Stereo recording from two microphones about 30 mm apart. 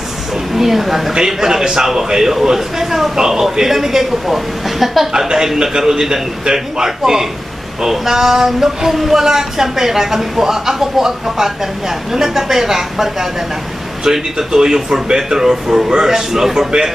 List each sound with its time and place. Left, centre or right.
0.5 s speech: centre
1.1 s speech: centre
5.6 s speech: right